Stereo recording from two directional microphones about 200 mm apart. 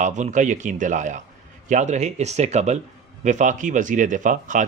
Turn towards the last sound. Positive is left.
turn(degrees=-40)  # may be behind; listen again after turning